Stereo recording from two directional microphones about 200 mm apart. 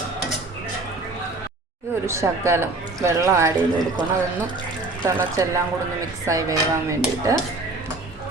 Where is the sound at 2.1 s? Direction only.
15° right (ahead or behind).